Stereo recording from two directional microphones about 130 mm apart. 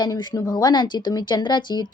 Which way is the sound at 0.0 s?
35° left (ahead or behind).